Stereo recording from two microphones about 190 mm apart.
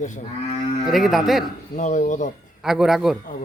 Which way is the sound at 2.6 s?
Centre (ahead or behind).